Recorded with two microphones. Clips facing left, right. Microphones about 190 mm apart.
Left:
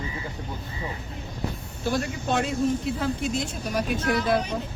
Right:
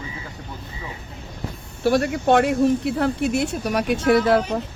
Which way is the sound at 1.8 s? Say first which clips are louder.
Right 8 dB; 70° right (ahead or behind).